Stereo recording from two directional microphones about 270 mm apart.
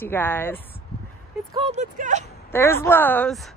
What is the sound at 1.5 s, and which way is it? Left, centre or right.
Speech, right.